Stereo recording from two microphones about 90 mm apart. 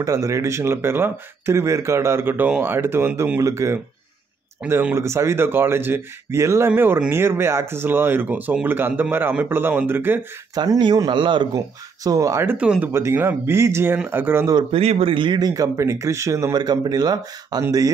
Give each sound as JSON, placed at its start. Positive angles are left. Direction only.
{"t": 0.0, "sound": "speech", "side_deg": -35}
{"t": 4.9, "sound": "speech", "side_deg": -30}
{"t": 10.5, "sound": "speech", "side_deg": -50}
{"t": 11.5, "sound": "speech", "side_deg": -40}
{"t": 12.4, "sound": "speech", "side_deg": -10}
{"t": 12.9, "sound": "speech", "side_deg": -25}
{"t": 14.7, "sound": "speech", "side_deg": -90}
{"t": 16.5, "sound": "speech", "side_deg": -50}